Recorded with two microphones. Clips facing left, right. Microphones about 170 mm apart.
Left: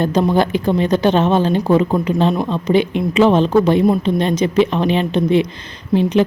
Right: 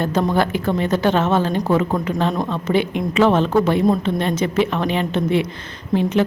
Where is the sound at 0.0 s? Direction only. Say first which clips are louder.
Left 3 dB; 20° left (ahead or behind).